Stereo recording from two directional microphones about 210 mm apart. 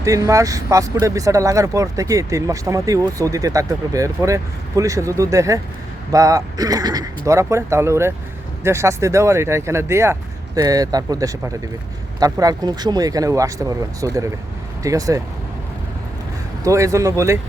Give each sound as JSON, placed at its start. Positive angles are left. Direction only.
{"t": 0.0, "sound": "speech", "side_deg": -15}
{"t": 16.6, "sound": "speech", "side_deg": -15}